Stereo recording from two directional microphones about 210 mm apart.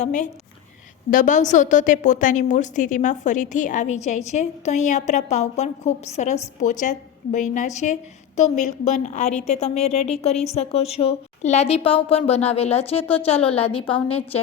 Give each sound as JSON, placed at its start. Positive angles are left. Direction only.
{"t": 0.0, "sound": "a woman's voice", "side_deg": 35}